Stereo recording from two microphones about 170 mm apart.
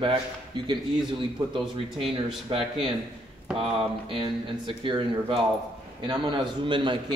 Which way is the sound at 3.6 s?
30° right (ahead or behind).